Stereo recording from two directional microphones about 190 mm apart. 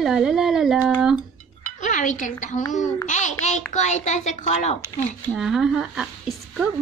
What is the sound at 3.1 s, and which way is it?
A child's voice, 40° left (ahead or behind).